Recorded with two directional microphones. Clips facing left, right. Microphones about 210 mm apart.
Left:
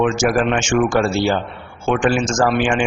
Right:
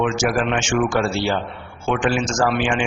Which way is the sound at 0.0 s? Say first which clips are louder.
Left 3 dB; 45° left (ahead or behind).